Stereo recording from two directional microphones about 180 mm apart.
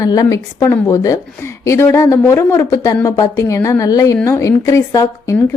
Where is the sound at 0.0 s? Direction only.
20° left (ahead or behind).